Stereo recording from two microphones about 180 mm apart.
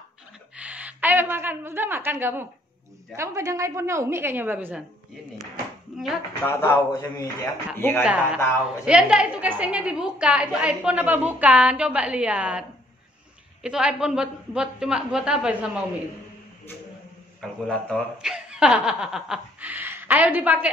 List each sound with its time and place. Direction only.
0.6 s a woman's voice: 10° right (ahead or behind)
5.9 s a sound: centre (ahead or behind)
6.4 s speech: 10° left (ahead or behind)
8.0 s a woman's voice: 5° right (ahead or behind)
17.4 s speech: centre (ahead or behind)